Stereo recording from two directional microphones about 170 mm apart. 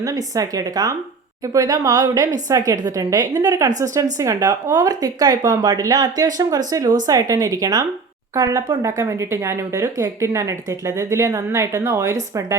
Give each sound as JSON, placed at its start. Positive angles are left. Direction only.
{"t": 0.0, "sound": "a woman's voice", "side_deg": -20}